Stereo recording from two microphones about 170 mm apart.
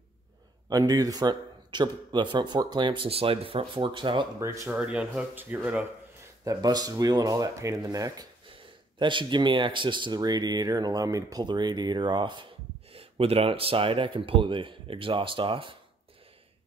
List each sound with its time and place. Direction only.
0.7 s speech: 20° right (ahead or behind)
4.6 s speech: 5° right (ahead or behind)
6.4 s speech: 20° right (ahead or behind)